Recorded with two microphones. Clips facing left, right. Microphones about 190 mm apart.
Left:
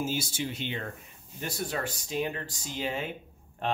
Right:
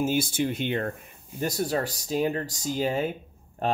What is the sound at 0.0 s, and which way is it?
Speech, 55° right (ahead or behind).